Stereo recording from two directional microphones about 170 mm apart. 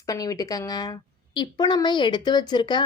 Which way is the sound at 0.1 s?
20° left (ahead or behind).